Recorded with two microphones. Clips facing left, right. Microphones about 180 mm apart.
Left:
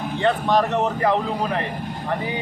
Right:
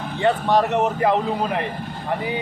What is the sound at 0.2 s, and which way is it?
A man's voice, 15° right (ahead or behind).